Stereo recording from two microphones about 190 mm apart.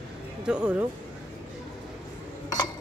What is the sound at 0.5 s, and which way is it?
Speech, 5° right (ahead or behind).